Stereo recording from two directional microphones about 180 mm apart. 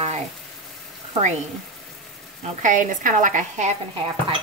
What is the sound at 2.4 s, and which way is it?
Speech, 45° right (ahead or behind).